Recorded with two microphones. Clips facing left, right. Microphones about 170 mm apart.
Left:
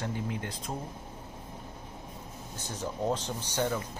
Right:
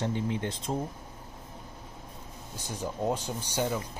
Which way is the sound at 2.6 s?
10° right (ahead or behind).